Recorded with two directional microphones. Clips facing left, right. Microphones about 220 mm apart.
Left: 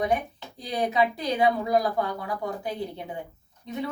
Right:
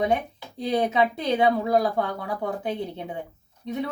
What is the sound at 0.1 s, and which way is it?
Speech, 25° right (ahead or behind).